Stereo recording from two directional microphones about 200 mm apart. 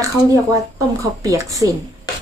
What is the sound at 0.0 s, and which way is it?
A woman's voice, 15° right (ahead or behind).